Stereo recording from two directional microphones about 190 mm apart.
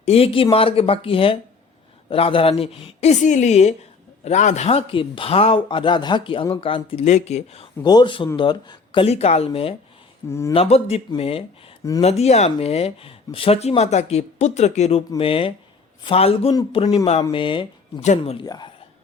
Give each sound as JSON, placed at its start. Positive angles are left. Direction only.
{"t": 0.0, "sound": "speech", "side_deg": 30}
{"t": 10.2, "sound": "speech", "side_deg": 15}
{"t": 10.5, "sound": "speech", "side_deg": 35}
{"t": 18.4, "sound": "speech", "side_deg": 20}